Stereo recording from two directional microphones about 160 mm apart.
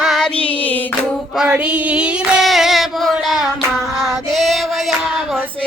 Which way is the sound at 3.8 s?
20° right (ahead or behind).